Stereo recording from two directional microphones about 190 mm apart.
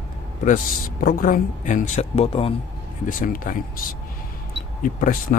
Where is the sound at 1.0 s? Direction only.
50° left (ahead or behind); by 2.5 s 30° left (ahead or behind).